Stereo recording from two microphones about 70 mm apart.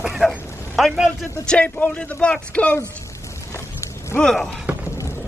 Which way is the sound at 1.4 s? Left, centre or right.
Centre.